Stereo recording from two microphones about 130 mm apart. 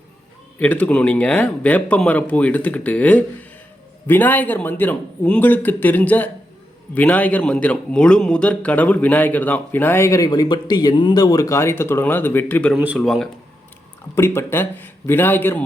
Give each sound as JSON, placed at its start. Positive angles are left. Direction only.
{"t": 0.6, "sound": "a man's voice", "side_deg": 10}
{"t": 13.0, "sound": "speech", "side_deg": 0}
{"t": 14.2, "sound": "a man's voice", "side_deg": 20}